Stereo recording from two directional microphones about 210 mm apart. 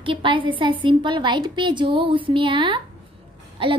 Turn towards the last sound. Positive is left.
turn(degrees=-25)  # may be behind; listen again after turning